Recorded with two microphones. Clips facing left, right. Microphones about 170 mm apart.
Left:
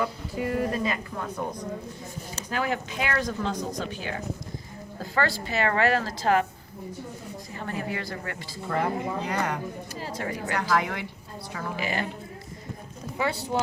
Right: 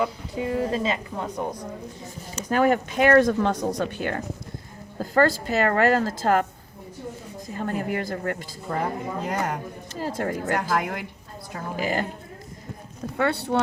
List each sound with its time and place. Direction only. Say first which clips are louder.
0.0 s speech: right 2 dB; 20° right (ahead or behind)
2.5 s speech: right 8 dB; 50° right (ahead or behind)
4.9 s speech: right 7 dB; 45° right (ahead or behind)
7.6 s speech: right 5 dB; 50° right (ahead or behind)
13.1 s speech: right 4 dB; 60° right (ahead or behind)